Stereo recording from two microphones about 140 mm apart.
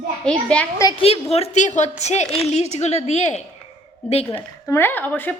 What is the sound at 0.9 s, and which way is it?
A woman's voice, 45° left (ahead or behind).